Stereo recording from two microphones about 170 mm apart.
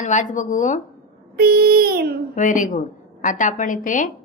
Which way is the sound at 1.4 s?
65° right (ahead or behind).